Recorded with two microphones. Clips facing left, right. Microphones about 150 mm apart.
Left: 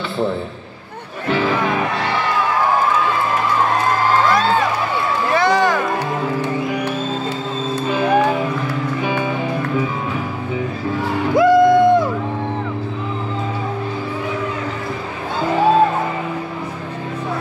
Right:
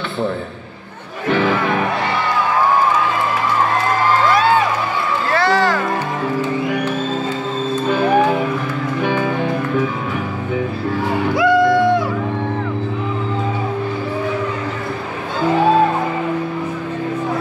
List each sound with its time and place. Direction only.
5.3 s music: 15° left (ahead or behind)
7.9 s music: centre (ahead or behind)
11.3 s music: 45° left (ahead or behind)